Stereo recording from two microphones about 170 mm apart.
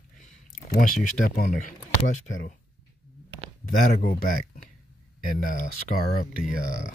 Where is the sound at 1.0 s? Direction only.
50° left (ahead or behind).